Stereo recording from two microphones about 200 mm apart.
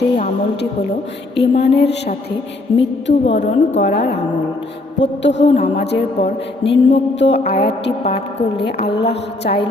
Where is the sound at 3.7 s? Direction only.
60° left (ahead or behind).